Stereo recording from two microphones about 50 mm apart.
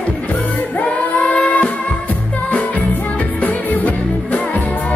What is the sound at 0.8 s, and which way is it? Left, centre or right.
Music, left.